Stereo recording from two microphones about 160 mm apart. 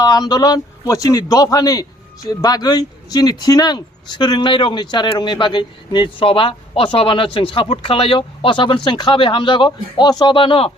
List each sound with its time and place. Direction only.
0.0 s a man's voice: 25° left (ahead or behind)